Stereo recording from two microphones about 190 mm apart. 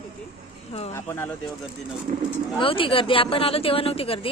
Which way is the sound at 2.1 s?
45° right (ahead or behind).